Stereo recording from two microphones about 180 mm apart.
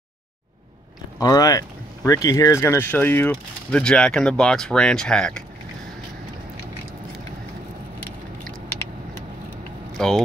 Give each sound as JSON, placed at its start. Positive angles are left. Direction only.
{"t": 1.2, "sound": "speech", "side_deg": 20}
{"t": 9.9, "sound": "speech", "side_deg": 0}